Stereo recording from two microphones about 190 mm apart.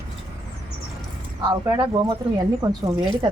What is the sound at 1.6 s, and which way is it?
Speech, 20° right (ahead or behind).